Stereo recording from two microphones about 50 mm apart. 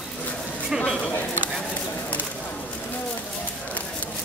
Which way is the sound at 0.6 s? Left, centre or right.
Centre.